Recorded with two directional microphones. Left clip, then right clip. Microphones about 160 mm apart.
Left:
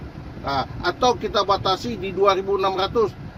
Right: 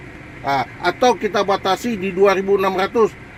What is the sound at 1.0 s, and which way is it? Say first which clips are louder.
Speech: right 3 dB; 55° right (ahead or behind).